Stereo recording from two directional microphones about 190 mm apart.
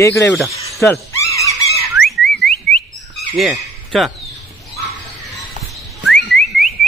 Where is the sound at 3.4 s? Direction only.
Centre (ahead or behind).